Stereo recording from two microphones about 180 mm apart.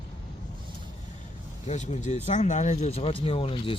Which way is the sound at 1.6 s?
40° left (ahead or behind).